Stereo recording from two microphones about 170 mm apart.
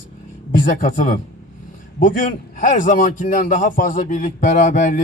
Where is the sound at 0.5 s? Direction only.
50° left (ahead or behind).